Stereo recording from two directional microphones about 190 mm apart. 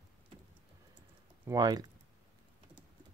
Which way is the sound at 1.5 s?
20° right (ahead or behind).